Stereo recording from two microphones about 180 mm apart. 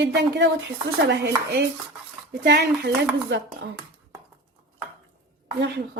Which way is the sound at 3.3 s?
80° right.